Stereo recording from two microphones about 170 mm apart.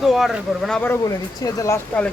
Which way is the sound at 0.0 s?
Centre (ahead or behind).